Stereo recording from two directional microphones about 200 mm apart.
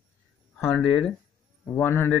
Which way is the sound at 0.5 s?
10° left (ahead or behind).